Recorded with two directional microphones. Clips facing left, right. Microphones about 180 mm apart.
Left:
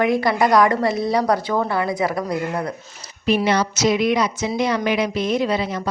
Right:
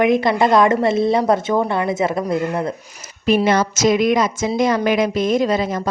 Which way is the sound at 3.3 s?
50° right (ahead or behind).